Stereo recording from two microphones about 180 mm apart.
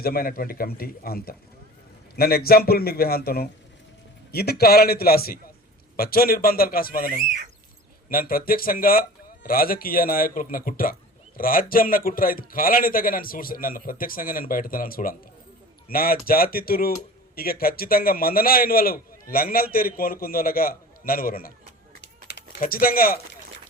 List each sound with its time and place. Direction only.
0.0 s a man's voice: 55° left (ahead or behind)
22.0 s typing: 75° left (ahead or behind)
22.6 s a man's voice: 55° left (ahead or behind)